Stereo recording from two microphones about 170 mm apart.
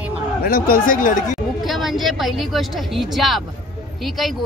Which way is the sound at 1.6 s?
Centre (ahead or behind).